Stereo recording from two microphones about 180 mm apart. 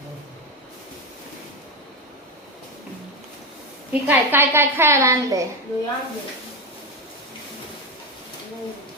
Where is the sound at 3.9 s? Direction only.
10° right (ahead or behind).